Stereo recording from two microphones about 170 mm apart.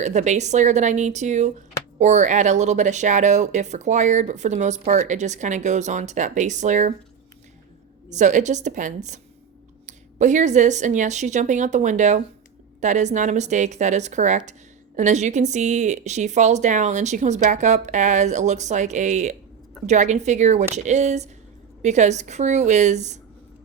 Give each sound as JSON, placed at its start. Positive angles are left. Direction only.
{"t": 0.0, "sound": "speech", "side_deg": -45}
{"t": 8.1, "sound": "speech", "side_deg": -45}